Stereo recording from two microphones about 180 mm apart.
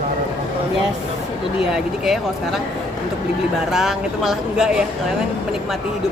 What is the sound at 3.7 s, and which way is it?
Speech, centre (ahead or behind).